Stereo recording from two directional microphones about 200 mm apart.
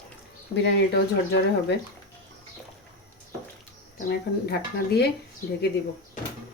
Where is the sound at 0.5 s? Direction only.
60° left (ahead or behind).